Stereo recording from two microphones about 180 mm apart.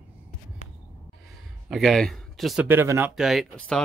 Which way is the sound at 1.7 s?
Centre (ahead or behind).